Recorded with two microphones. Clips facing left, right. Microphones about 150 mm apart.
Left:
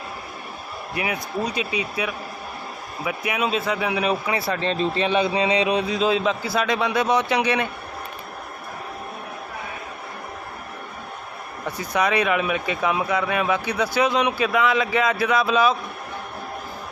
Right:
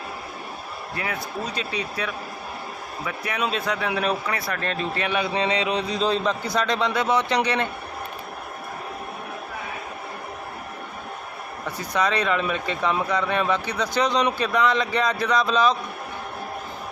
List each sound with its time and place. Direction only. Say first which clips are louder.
0.9 s speech: left 4 dB; 15° left (ahead or behind)
4.3 s a man's voice: left 4 dB; 20° left (ahead or behind)
5.9 s speech: left 2 dB; 5° left (ahead or behind)
11.8 s speech: left 2 dB; 10° left (ahead or behind)